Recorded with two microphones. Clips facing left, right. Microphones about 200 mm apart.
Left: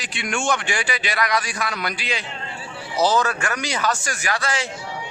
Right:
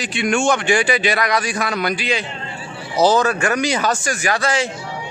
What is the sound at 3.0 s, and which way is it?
Speech, 45° right (ahead or behind).